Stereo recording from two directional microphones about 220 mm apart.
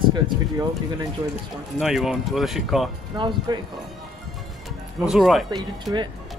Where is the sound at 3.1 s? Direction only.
20° right (ahead or behind).